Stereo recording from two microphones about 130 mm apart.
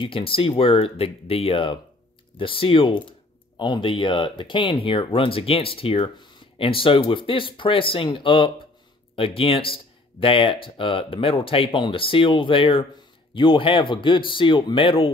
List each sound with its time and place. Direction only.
0.0 s speech: 45° left (ahead or behind)